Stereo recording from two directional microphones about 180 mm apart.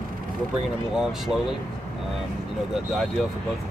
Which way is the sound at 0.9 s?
5° right (ahead or behind).